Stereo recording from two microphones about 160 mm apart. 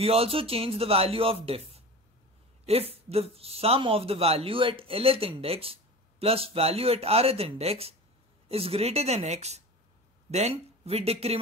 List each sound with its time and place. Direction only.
0.0 s speech: 40° right (ahead or behind)